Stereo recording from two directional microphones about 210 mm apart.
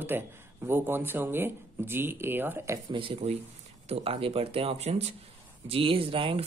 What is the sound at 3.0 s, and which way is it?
Speech, 25° right (ahead or behind).